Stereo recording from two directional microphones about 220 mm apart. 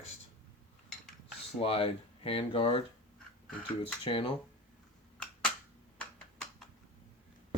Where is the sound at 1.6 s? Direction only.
25° left (ahead or behind).